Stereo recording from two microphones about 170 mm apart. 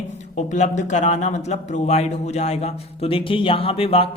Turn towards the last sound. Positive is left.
turn(degrees=35)  # may be behind; listen again after turning